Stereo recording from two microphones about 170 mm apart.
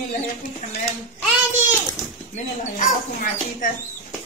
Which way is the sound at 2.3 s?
45° left (ahead or behind).